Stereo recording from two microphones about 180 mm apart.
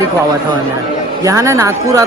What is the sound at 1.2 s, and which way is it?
Speech, 20° right (ahead or behind).